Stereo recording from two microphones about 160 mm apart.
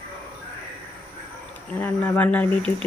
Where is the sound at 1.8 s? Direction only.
10° left (ahead or behind).